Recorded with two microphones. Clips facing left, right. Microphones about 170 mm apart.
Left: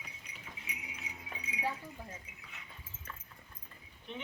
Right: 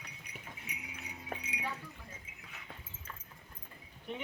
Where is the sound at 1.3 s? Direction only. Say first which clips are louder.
Right 6 dB; 75° right (ahead or behind).